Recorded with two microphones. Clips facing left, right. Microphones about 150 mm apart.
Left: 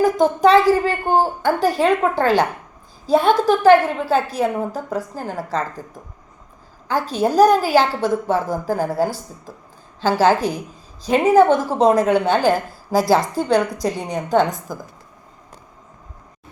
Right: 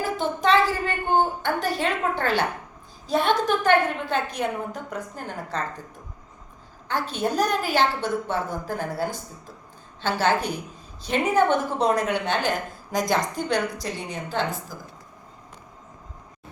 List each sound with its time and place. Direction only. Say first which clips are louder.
0.0 s a woman's voice: left 10 dB; 40° left (ahead or behind)
6.9 s a woman's voice: left 7 dB; 35° left (ahead or behind)